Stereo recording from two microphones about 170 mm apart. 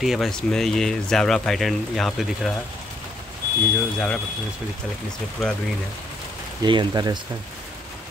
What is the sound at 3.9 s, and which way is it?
Speech, 5° left (ahead or behind).